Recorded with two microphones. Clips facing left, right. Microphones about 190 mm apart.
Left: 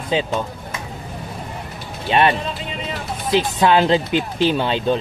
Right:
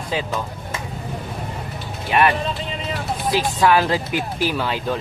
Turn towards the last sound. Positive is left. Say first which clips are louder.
# left 4 dB
turn(degrees=25)  # may be behind; listen again after turning